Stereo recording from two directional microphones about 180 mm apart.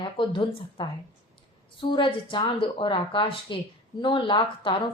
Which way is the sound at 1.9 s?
30° left (ahead or behind).